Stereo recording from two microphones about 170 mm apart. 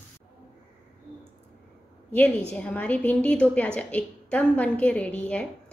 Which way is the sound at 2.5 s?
5° left (ahead or behind).